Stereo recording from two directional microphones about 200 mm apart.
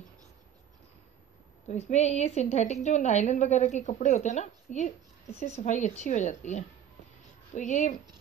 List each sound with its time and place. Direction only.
1.7 s a woman's voice: 35° left (ahead or behind)